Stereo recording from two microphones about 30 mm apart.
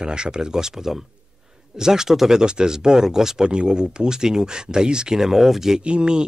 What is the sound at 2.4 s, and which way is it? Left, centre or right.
Speech, right.